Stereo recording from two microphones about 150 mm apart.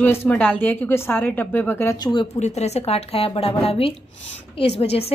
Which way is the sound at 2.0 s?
30° left (ahead or behind).